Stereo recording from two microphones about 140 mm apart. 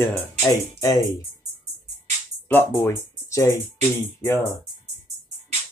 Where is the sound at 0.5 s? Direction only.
25° left (ahead or behind).